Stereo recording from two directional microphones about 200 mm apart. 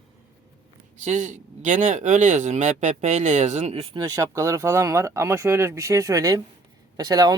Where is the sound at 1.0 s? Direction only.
35° right (ahead or behind).